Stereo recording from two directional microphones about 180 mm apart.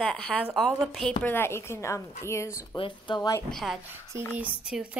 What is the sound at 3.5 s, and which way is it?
A woman's voice, centre (ahead or behind).